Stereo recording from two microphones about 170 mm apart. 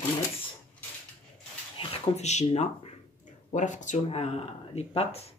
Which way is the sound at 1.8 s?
35° left (ahead or behind).